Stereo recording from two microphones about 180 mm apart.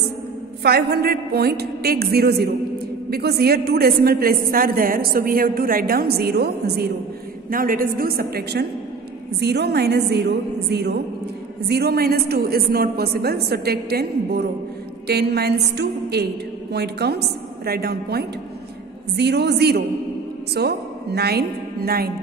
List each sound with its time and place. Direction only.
0.6 s a woman's voice: 60° right (ahead or behind)
7.4 s a woman's voice: 50° right (ahead or behind)